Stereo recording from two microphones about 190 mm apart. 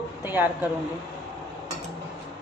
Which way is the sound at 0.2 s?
10° right (ahead or behind).